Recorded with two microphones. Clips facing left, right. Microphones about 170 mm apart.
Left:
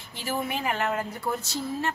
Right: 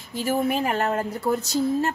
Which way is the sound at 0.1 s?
45° right (ahead or behind).